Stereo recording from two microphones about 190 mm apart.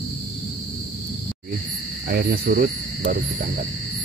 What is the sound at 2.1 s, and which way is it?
Cricket, 55° right (ahead or behind).